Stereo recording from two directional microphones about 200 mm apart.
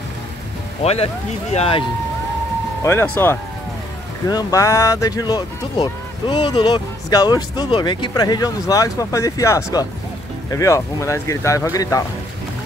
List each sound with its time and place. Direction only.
0.8 s speech: 30° left (ahead or behind)
2.8 s speech: 15° left (ahead or behind)